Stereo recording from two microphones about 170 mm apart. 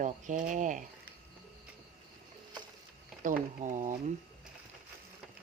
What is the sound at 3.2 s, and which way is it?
Speech, 45° right (ahead or behind).